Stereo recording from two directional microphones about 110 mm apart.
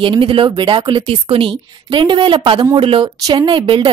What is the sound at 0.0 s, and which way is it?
A woman's voice, 55° right (ahead or behind).